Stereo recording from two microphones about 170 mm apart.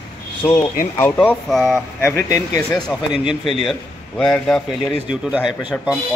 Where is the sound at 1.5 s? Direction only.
Centre (ahead or behind).